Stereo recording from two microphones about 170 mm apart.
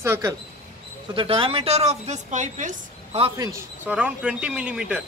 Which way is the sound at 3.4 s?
15° right (ahead or behind).